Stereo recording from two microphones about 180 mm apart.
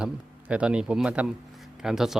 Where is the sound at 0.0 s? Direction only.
5° right (ahead or behind).